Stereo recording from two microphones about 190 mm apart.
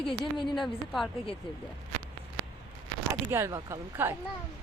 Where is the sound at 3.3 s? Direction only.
15° right (ahead or behind).